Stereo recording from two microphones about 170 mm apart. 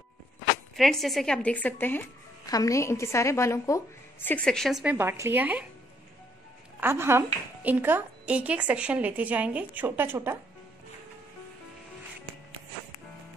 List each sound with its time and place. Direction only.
0.7 s a woman's voice: centre (ahead or behind)
4.9 s a woman's voice: 15° right (ahead or behind)
6.8 s a woman's voice: 15° right (ahead or behind)